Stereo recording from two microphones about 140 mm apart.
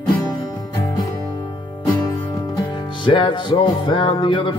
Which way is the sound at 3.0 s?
35° left (ahead or behind).